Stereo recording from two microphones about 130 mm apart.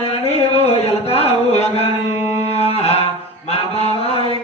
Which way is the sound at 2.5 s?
55° left (ahead or behind).